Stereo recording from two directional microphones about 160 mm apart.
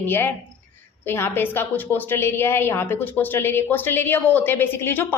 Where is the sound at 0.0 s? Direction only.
10° left (ahead or behind).